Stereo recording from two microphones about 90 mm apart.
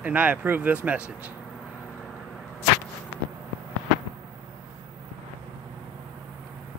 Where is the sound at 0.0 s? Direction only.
15° right (ahead or behind).